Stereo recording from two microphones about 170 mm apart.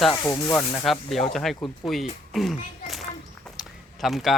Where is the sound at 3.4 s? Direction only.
Centre (ahead or behind).